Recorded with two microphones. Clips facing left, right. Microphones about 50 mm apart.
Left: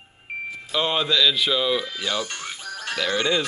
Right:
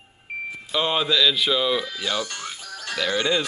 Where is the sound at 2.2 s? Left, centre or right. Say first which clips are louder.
Even; left.